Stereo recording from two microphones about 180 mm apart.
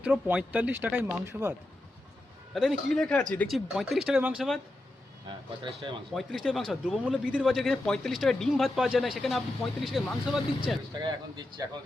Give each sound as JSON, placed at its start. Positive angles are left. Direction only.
{"t": 0.0, "sound": "speech", "side_deg": -5}
{"t": 2.5, "sound": "speech", "side_deg": 0}
{"t": 5.6, "sound": "speech", "side_deg": -25}
{"t": 6.1, "sound": "speech", "side_deg": 0}
{"t": 11.0, "sound": "speech", "side_deg": -25}